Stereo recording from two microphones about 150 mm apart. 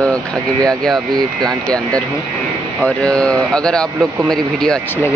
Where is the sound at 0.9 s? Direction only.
25° right (ahead or behind).